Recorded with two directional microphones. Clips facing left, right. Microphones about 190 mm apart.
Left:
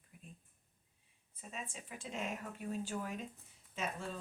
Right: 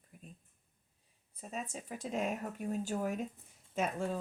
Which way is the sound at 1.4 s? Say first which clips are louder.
Right 6 dB; 40° right (ahead or behind).